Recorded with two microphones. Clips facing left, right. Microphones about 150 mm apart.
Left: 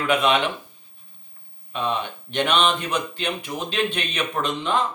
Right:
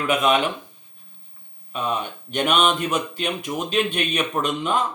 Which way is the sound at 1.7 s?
10° right (ahead or behind).